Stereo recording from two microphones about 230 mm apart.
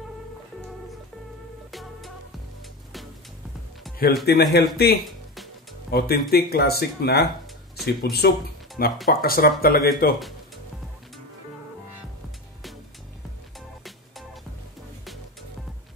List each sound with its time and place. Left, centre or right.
1.7 s music: centre
4.3 s speech: left
5.3 s music: centre
5.9 s speech: left
13.6 s music: centre